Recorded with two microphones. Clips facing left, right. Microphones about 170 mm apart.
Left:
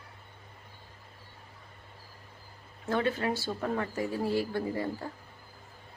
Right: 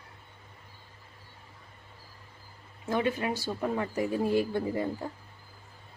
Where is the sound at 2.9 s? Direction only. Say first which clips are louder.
Even; 15° right (ahead or behind).